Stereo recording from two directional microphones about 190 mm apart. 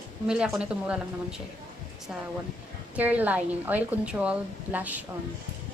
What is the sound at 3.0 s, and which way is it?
A woman's voice, 10° right (ahead or behind).